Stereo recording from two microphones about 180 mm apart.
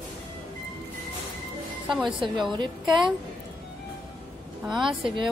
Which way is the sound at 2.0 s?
25° right (ahead or behind).